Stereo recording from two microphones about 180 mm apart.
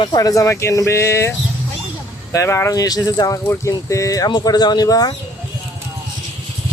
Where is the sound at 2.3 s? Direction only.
15° left (ahead or behind).